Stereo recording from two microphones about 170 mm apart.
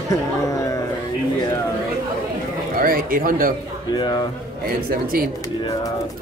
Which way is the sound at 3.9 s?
25° left (ahead or behind).